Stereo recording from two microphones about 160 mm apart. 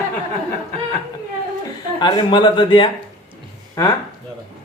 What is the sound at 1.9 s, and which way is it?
A man's voice, 30° left (ahead or behind).